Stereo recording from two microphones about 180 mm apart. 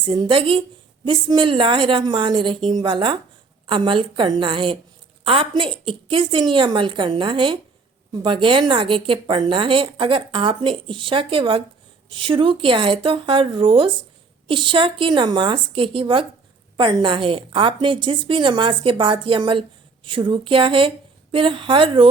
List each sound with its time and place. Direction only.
0.0 s a woman's voice: 30° right (ahead or behind)